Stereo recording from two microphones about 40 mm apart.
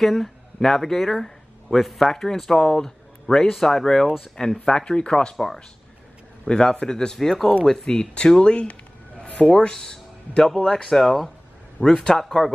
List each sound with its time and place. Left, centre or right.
0.0 s speech: centre
4.6 s speech: left
6.4 s speech: left
9.2 s a sound: left
9.6 s speech: centre
11.0 s speech: centre
11.8 s speech: centre